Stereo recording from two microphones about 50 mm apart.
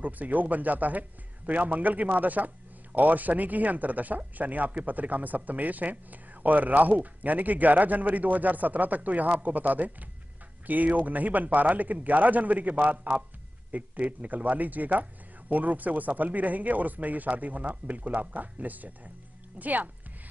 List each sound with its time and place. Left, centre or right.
0.0 s speech: right